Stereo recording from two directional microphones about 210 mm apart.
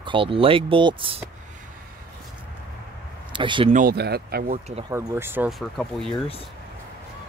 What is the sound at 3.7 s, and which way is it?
Speech, 45° right (ahead or behind).